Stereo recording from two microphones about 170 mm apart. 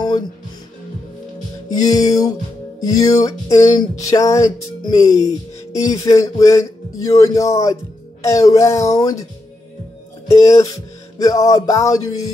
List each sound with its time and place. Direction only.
1.7 s music: 20° left (ahead or behind)
10.2 s music: 20° left (ahead or behind)